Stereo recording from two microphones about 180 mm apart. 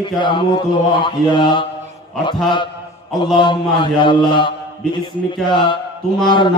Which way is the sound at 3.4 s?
25° left (ahead or behind).